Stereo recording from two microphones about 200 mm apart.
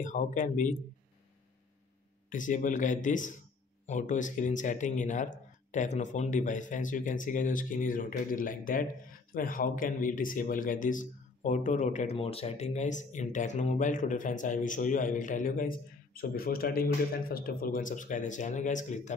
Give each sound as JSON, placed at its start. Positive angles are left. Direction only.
{"t": 0.0, "sound": "speech", "side_deg": 40}
{"t": 2.2, "sound": "speech", "side_deg": 40}